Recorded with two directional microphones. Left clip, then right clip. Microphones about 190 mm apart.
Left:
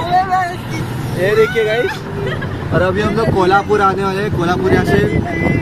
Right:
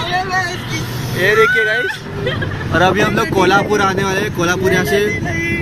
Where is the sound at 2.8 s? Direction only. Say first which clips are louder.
Right 2 dB; 10° right (ahead or behind).